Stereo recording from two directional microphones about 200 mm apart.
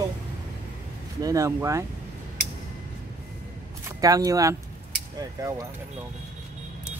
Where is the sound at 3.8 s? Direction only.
20° right (ahead or behind).